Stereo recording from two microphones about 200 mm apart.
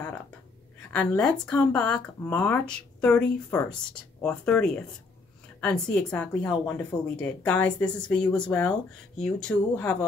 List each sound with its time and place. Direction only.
0.9 s speech: 5° left (ahead or behind)